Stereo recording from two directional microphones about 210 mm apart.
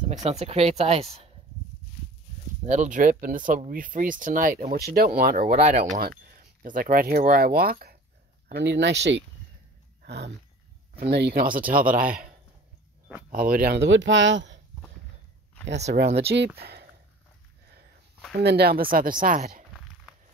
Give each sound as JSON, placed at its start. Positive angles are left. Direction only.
{"t": 0.0, "sound": "speech", "side_deg": -35}
{"t": 2.6, "sound": "speech", "side_deg": -35}
{"t": 13.3, "sound": "speech", "side_deg": -45}
{"t": 16.1, "sound": "speech", "side_deg": -30}
{"t": 16.6, "sound": "speech", "side_deg": -50}
{"t": 18.3, "sound": "speech", "side_deg": -50}